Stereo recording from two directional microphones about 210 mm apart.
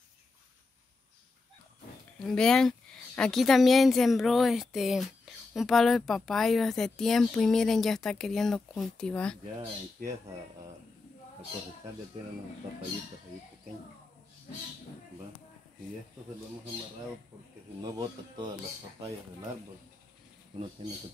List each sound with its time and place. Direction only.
2.1 s a woman's voice: 5° left (ahead or behind)
17.8 s speech: 20° right (ahead or behind)